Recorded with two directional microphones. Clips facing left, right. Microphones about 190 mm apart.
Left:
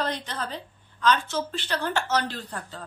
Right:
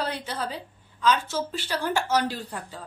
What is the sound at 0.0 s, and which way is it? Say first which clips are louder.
A woman's voice: even; 10° right (ahead or behind).